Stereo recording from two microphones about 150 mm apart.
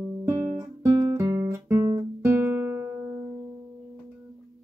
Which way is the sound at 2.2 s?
15° right (ahead or behind).